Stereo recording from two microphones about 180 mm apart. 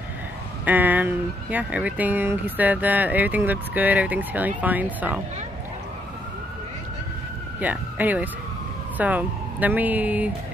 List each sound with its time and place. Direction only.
0.7 s speech: 10° right (ahead or behind)
7.6 s speech: 10° right (ahead or behind)